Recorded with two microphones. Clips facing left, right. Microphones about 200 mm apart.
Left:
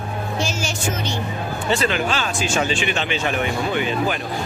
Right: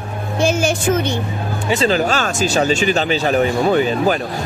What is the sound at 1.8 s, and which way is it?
A man's voice, 40° right (ahead or behind).